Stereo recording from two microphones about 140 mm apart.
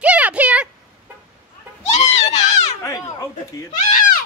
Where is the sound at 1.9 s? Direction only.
55° left (ahead or behind).